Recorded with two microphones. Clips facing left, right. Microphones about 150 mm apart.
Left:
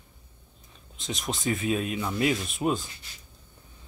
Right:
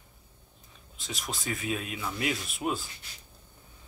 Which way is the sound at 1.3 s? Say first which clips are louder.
Left 6 dB; centre (ahead or behind).